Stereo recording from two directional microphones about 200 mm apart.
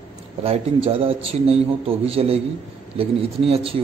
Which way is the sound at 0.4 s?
30° right (ahead or behind).